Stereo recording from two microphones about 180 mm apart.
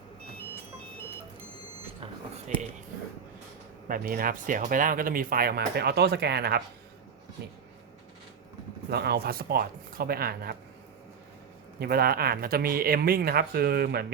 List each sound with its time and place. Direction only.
3.8 s speech: 50° right (ahead or behind)
8.9 s speech: 65° right (ahead or behind)
11.8 s speech: 60° right (ahead or behind)